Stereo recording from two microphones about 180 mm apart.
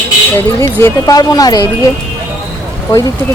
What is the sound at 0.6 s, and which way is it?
Speech, 15° left (ahead or behind).